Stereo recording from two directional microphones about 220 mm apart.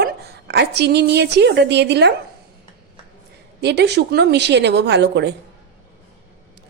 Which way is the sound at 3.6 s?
50° right (ahead or behind).